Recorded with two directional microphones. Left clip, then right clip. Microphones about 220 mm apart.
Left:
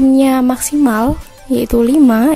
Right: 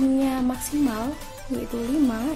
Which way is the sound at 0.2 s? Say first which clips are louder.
Left 13 dB; 40° left (ahead or behind).